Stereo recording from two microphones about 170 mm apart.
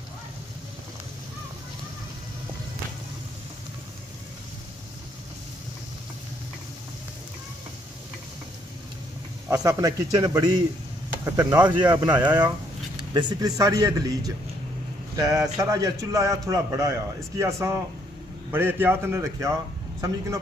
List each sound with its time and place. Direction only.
9.5 s a man's voice: 20° right (ahead or behind)
12.1 s a man's voice: 10° right (ahead or behind)
12.4 s a man's voice: 25° right (ahead or behind)